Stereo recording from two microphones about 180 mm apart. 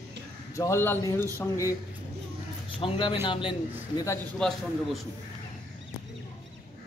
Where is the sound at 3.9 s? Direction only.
15° left (ahead or behind).